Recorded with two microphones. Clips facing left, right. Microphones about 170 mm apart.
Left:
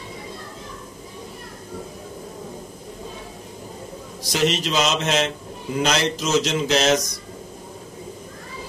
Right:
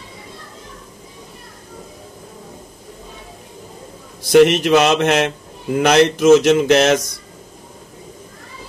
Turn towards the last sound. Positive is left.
turn(degrees=-55)  # may be behind; listen again after turning